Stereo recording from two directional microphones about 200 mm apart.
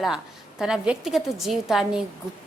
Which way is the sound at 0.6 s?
5° right (ahead or behind).